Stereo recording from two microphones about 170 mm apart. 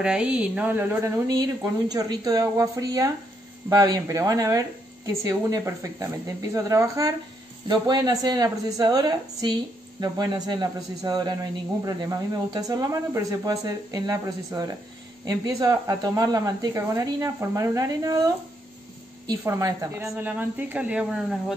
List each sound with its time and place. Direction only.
0.0 s a woman's voice: 5° right (ahead or behind)
19.2 s speech: 20° right (ahead or behind); by 21.5 s 5° right (ahead or behind)